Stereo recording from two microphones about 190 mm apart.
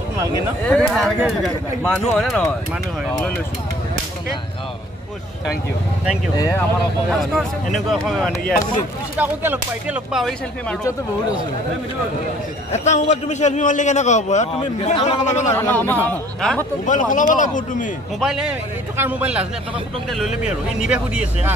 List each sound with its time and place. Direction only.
0.7 s speech: 5° left (ahead or behind)
6.3 s speech: 20° left (ahead or behind)
7.1 s speech: centre (ahead or behind)
9.2 s speech: 10° right (ahead or behind)
12.7 s a man's voice: 40° left (ahead or behind)
15.5 s speech: 10° left (ahead or behind)
16.8 s a man's voice: 40° left (ahead or behind)
18.2 s speech: 5° right (ahead or behind)